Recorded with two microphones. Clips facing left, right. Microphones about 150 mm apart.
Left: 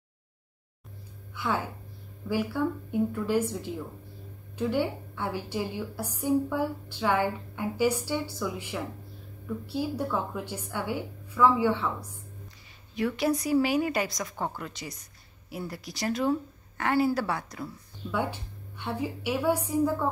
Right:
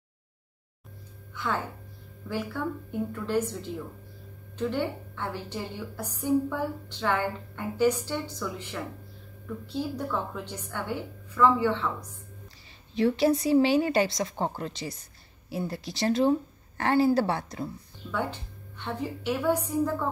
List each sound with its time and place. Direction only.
1.3 s a woman's voice: 10° left (ahead or behind)
12.9 s a woman's voice: 30° right (ahead or behind)
18.1 s a woman's voice: 10° left (ahead or behind)